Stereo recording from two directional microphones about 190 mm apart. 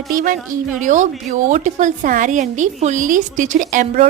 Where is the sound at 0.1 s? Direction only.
45° right (ahead or behind).